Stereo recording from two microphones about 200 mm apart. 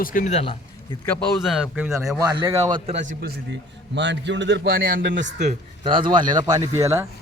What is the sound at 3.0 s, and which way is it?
A man's voice, 50° right (ahead or behind).